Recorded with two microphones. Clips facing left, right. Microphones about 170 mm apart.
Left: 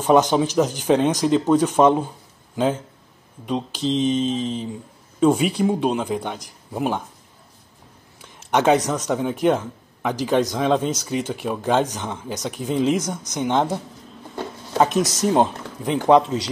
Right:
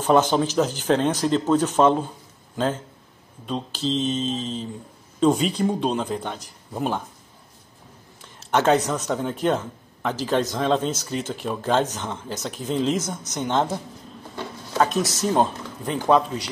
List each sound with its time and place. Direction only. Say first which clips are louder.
0.0 s speech: left 2 dB; 10° left (ahead or behind)
8.2 s speech: left 2 dB; 15° left (ahead or behind)